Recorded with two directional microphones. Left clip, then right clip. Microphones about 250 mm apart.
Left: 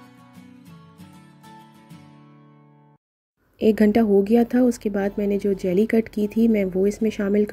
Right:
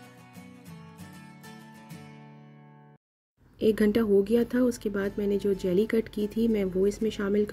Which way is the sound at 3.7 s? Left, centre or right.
Centre.